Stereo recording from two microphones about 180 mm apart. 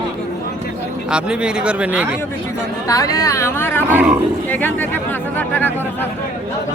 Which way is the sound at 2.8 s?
20° left (ahead or behind).